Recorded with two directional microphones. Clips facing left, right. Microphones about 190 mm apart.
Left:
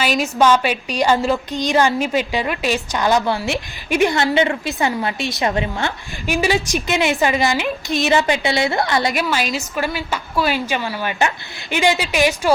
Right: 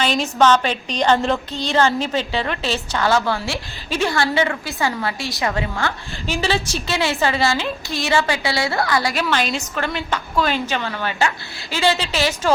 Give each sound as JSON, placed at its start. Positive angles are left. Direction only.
{"t": 0.0, "sound": "a woman's voice", "side_deg": 5}
{"t": 9.2, "sound": "a woman's voice", "side_deg": 5}